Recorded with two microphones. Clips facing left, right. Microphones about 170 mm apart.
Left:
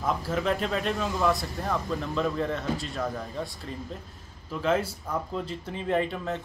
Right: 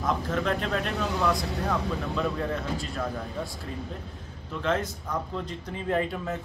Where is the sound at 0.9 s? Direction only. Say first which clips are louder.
Right 1 dB; 70° right (ahead or behind).